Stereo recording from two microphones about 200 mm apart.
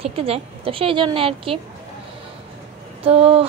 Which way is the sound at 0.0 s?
30° right (ahead or behind).